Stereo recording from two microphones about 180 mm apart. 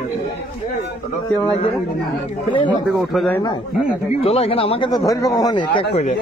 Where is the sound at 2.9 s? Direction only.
Centre (ahead or behind).